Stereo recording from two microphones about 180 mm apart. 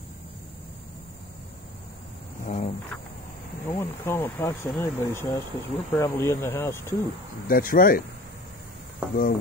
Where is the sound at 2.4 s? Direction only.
40° left (ahead or behind).